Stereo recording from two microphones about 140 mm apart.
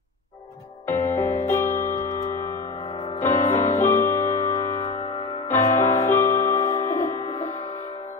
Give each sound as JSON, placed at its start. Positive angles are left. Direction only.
{"t": 0.8, "sound": "music", "side_deg": 15}
{"t": 3.2, "sound": "music", "side_deg": 15}